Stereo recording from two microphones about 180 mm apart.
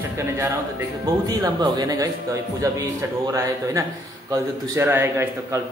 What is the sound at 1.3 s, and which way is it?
Speech, 20° right (ahead or behind).